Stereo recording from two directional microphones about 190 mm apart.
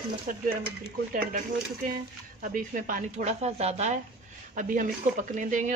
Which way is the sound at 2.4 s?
45° right (ahead or behind).